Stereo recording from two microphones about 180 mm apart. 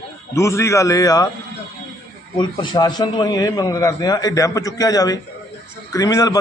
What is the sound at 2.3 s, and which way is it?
A man's voice, 25° left (ahead or behind).